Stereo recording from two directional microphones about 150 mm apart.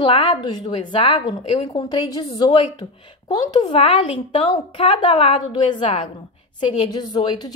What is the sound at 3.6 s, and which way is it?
A woman's voice, 35° left (ahead or behind).